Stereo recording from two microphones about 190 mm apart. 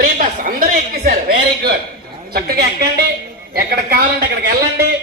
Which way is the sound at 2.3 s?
55° right (ahead or behind).